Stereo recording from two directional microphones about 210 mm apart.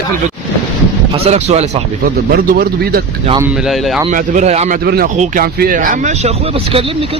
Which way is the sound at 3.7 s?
Centre (ahead or behind).